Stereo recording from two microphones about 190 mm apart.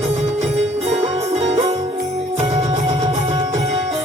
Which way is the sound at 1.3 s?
35° right (ahead or behind).